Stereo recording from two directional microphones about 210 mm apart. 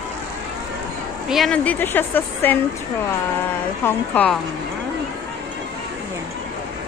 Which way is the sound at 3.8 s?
5° left (ahead or behind).